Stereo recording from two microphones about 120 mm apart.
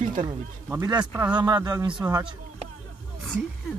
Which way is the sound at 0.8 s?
35° right (ahead or behind).